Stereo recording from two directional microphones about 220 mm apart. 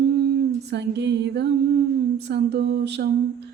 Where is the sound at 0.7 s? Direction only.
50° right (ahead or behind).